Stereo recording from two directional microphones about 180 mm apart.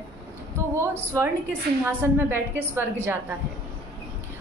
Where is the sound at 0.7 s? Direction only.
15° right (ahead or behind).